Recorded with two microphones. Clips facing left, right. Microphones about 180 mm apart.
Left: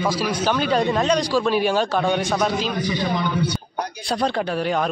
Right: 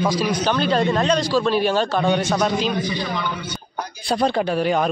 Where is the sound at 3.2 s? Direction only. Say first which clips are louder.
Left 5 dB; 35° left (ahead or behind).